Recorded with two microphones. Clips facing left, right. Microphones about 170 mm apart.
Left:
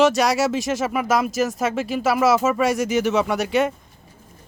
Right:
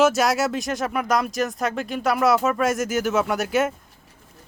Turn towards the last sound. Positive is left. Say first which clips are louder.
# left 2 dB
turn(degrees=0)  # may be behind; listen again after turning